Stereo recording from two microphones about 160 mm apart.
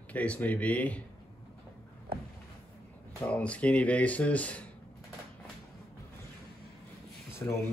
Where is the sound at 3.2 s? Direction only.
10° left (ahead or behind).